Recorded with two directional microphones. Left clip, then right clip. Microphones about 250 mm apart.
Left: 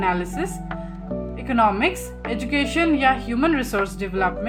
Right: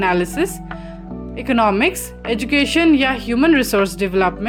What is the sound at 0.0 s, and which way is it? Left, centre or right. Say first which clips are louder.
A woman's voice: right 6 dB; right.